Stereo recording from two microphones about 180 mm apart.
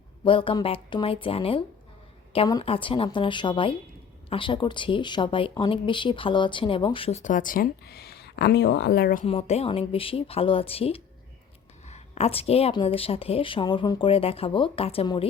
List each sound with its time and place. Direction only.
0.3 s speech: 30° left (ahead or behind); by 9.2 s 55° left (ahead or behind)
9.2 s speech: 35° left (ahead or behind)